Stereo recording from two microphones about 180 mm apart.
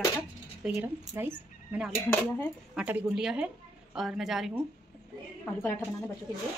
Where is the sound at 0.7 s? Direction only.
15° right (ahead or behind).